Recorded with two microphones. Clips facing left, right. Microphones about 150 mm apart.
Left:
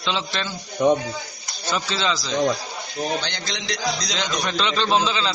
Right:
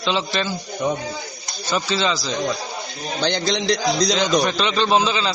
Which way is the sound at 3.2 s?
35° right (ahead or behind).